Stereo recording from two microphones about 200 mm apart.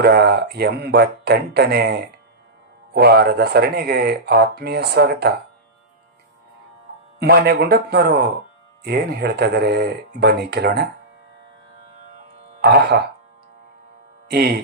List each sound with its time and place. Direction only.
0.0 s speech: 55° right (ahead or behind)
7.2 s speech: 55° right (ahead or behind)
12.5 s speech: 55° right (ahead or behind)
14.3 s speech: 50° right (ahead or behind)